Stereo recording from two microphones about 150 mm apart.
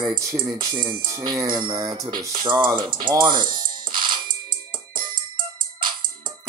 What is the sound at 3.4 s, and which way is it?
Music, 30° right (ahead or behind).